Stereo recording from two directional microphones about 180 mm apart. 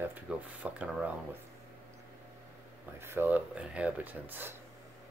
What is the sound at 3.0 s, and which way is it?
Speech, 10° right (ahead or behind).